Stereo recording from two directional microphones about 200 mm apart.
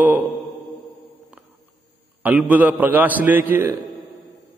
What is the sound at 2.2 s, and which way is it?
A man's voice, 5° right (ahead or behind).